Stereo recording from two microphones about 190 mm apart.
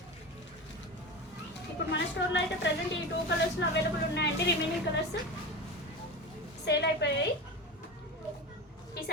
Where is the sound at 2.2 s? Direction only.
75° left (ahead or behind).